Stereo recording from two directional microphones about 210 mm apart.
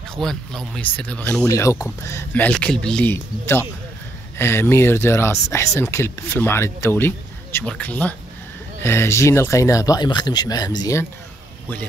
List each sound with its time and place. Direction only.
0.1 s speech: centre (ahead or behind)